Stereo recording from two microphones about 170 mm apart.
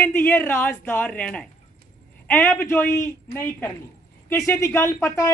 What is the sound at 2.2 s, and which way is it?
A woman's voice, 10° left (ahead or behind).